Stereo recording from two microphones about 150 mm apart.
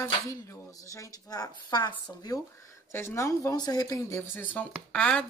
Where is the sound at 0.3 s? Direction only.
25° left (ahead or behind).